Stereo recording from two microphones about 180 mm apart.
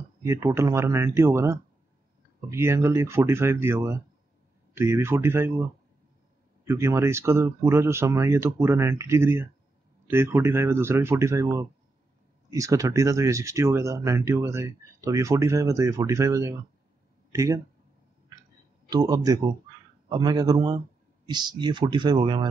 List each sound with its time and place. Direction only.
0.2 s speech: 15° right (ahead or behind)
6.6 s speech: 15° right (ahead or behind)
18.9 s speech: 20° right (ahead or behind)